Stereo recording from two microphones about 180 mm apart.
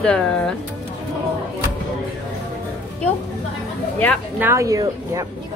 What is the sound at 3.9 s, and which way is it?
Speech, 10° left (ahead or behind).